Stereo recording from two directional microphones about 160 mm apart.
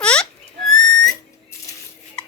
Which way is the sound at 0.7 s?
Centre (ahead or behind).